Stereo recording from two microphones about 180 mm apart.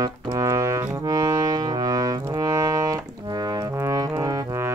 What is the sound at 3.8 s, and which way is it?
Music, 15° right (ahead or behind).